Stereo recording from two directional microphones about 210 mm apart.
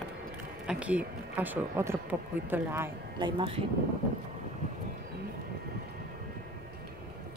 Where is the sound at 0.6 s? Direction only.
5° right (ahead or behind).